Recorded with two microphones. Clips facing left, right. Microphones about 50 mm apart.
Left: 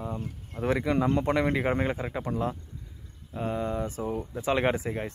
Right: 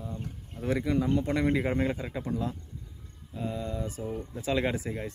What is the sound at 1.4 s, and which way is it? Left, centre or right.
Speech, left.